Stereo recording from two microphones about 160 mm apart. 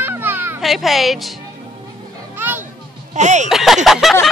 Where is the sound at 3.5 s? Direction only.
Centre (ahead or behind).